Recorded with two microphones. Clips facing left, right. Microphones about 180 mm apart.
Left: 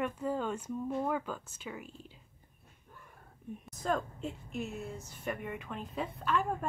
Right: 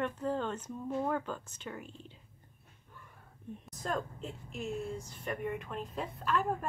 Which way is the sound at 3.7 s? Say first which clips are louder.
Left 3 dB; centre (ahead or behind).